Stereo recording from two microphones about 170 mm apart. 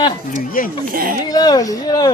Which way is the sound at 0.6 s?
55° left (ahead or behind).